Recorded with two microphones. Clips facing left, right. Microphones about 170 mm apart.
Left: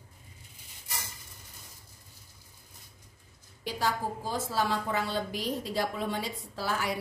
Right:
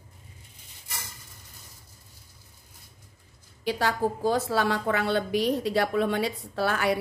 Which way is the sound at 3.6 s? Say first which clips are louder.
Right 5 dB; 70° right (ahead or behind).